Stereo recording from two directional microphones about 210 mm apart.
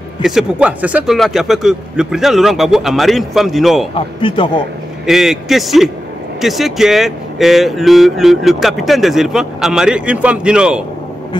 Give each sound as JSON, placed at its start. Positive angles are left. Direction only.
{"t": 0.2, "sound": "speech", "side_deg": 0}
{"t": 3.9, "sound": "speech", "side_deg": 25}
{"t": 5.0, "sound": "speech", "side_deg": 0}